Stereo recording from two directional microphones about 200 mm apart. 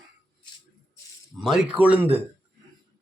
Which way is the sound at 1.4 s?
Centre (ahead or behind).